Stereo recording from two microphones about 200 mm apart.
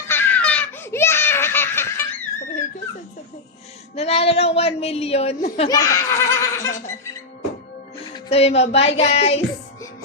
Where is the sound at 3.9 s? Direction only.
30° left (ahead or behind).